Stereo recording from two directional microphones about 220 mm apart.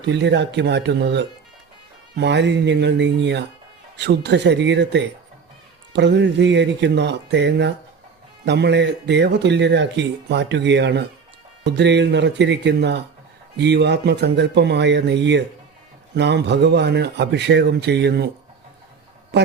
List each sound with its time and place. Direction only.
0.0 s speech: 50° right (ahead or behind)
19.3 s speech: 50° right (ahead or behind)